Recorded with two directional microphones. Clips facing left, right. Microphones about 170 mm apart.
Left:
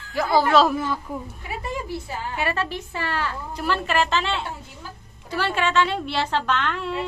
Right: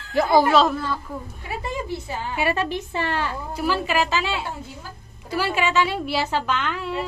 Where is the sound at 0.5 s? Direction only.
Centre (ahead or behind).